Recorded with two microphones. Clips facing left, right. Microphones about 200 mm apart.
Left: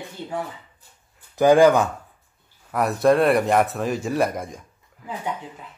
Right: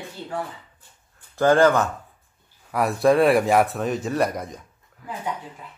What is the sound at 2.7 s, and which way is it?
Speech, centre (ahead or behind).